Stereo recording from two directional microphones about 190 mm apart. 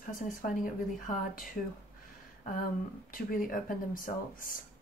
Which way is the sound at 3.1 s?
45° left (ahead or behind).